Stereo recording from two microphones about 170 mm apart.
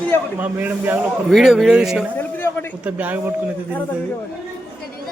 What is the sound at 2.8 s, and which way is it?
Speech, 10° right (ahead or behind).